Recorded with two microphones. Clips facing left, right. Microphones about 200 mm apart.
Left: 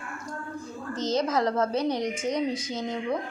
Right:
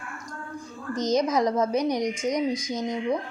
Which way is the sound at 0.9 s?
15° right (ahead or behind).